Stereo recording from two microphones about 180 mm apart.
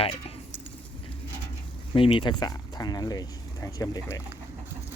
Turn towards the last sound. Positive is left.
turn(degrees=20)  # may be behind; listen again after turning